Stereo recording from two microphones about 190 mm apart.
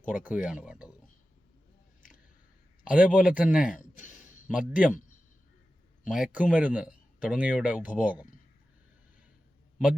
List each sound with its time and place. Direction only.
0.1 s speech: 10° right (ahead or behind)
2.0 s a sound: 45° left (ahead or behind)
2.8 s speech: 5° right (ahead or behind)
3.8 s a sound: 40° left (ahead or behind)
4.4 s speech: 5° right (ahead or behind)
6.1 s speech: 5° right (ahead or behind)